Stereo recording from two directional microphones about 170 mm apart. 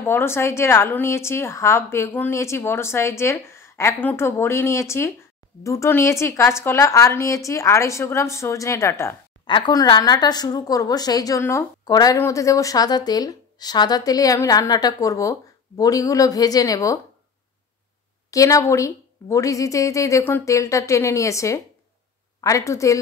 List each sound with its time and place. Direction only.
0.0 s a woman's voice: 15° left (ahead or behind)
18.3 s a woman's voice: 20° left (ahead or behind)